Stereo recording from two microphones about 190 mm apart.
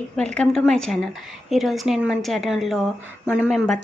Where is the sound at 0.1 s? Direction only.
5° left (ahead or behind).